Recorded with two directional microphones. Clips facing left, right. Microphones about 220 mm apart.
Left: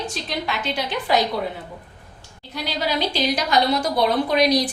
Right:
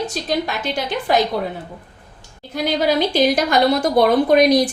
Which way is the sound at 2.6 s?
50° right (ahead or behind).